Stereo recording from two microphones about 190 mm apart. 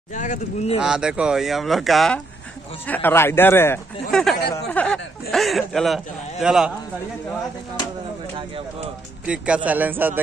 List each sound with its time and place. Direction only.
0.1 s speech: 40° left (ahead or behind)
0.7 s speech: 5° right (ahead or behind)
9.2 s a man's voice: 5° right (ahead or behind)